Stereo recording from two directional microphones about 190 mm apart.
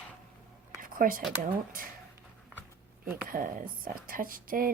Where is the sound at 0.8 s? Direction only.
45° right (ahead or behind).